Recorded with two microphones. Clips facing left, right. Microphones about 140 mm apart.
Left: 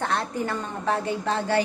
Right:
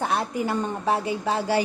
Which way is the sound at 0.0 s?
10° right (ahead or behind).